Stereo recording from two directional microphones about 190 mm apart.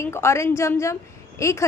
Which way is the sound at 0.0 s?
15° left (ahead or behind).